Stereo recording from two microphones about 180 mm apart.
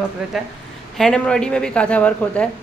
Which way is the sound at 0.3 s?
Centre (ahead or behind).